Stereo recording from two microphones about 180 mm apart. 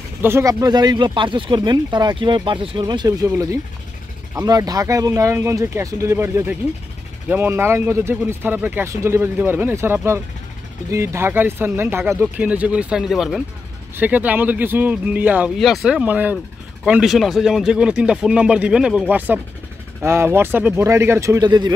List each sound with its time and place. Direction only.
0.2 s speech: 15° right (ahead or behind)